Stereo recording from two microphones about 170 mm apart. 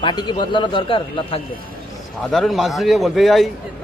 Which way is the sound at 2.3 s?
Centre (ahead or behind).